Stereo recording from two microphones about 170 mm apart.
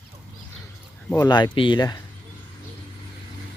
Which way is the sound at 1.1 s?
25° left (ahead or behind).